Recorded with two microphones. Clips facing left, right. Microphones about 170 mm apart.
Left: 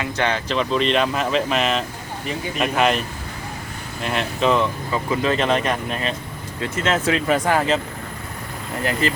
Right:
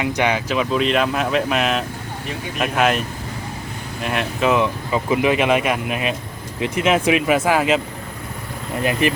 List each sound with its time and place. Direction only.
0.0 s speech: 10° right (ahead or behind)
4.0 s speech: 5° right (ahead or behind)
8.8 s speech: 15° right (ahead or behind)